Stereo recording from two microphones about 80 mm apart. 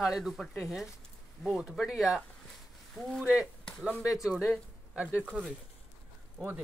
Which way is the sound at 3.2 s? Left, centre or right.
Centre.